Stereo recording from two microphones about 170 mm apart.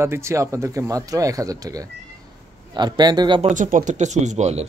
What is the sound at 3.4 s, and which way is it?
Speech, 45° right (ahead or behind).